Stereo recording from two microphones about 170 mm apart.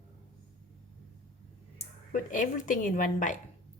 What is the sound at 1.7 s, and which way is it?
Speech, 50° left (ahead or behind).